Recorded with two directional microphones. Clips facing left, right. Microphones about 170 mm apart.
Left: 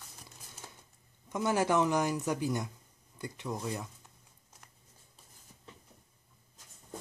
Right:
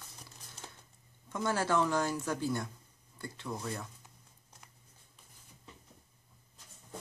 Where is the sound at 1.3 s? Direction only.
15° left (ahead or behind).